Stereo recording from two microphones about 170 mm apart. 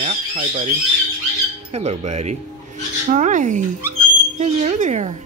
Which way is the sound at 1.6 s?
40° right (ahead or behind).